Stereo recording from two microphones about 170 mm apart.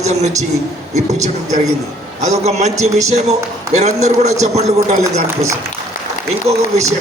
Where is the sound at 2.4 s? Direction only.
40° right (ahead or behind).